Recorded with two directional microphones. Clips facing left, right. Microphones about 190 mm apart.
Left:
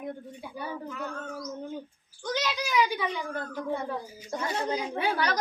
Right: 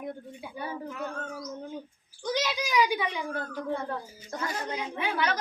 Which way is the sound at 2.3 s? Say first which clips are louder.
Even; 15° right (ahead or behind).